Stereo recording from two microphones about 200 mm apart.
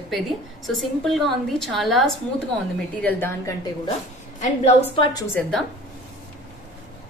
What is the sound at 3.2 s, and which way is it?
Speech, 15° left (ahead or behind).